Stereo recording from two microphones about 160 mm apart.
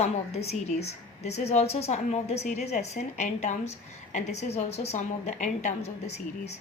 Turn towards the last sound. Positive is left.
turn(degrees=40)  # may be behind; listen again after turning